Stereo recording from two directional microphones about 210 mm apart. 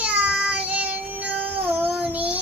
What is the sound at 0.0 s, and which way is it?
Child singing, 5° right (ahead or behind).